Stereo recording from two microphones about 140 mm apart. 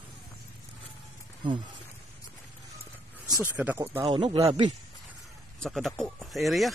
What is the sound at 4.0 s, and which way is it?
Speech, 35° right (ahead or behind).